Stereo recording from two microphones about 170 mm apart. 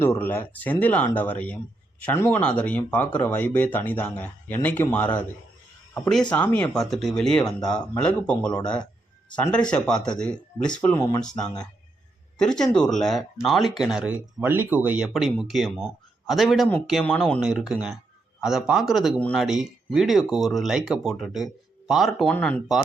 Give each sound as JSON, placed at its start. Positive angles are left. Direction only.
{"t": 0.0, "sound": "speech", "side_deg": 15}
{"t": 10.9, "sound": "speech", "side_deg": 20}
{"t": 12.4, "sound": "speech", "side_deg": 5}
{"t": 17.4, "sound": "speech", "side_deg": -5}